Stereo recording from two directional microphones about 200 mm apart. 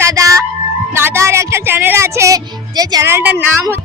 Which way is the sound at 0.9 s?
10° right (ahead or behind).